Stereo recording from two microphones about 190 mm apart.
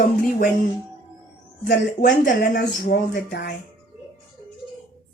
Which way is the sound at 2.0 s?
40° left (ahead or behind).